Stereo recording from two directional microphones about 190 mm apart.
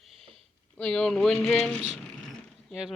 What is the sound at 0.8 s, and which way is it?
Speech, 5° left (ahead or behind).